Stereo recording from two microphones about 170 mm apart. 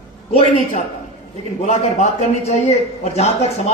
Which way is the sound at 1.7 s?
40° left (ahead or behind).